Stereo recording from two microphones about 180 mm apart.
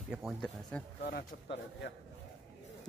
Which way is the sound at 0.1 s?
Centre (ahead or behind).